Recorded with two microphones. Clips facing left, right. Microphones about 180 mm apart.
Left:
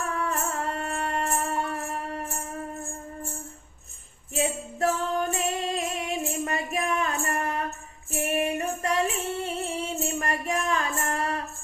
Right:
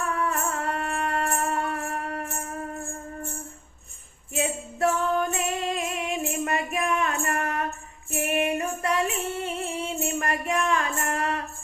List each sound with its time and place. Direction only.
0.1 s music: 35° left (ahead or behind)
4.4 s music: 35° left (ahead or behind)
8.2 s female singing: 35° left (ahead or behind)